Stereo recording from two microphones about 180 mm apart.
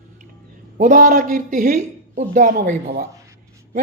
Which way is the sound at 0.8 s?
45° right (ahead or behind).